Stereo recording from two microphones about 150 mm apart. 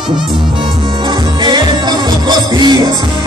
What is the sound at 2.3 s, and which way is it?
Music, 30° right (ahead or behind).